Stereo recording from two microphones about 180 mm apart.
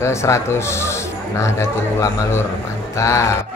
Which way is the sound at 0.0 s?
15° left (ahead or behind).